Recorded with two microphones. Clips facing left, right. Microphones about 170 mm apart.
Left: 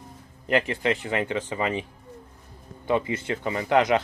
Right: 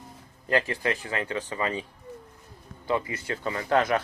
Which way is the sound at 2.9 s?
20° left (ahead or behind).